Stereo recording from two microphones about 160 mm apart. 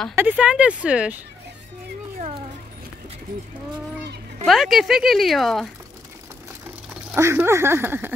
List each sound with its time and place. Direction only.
0.1 s speech: 10° right (ahead or behind)
4.5 s speech: centre (ahead or behind)
7.2 s speech: 15° right (ahead or behind)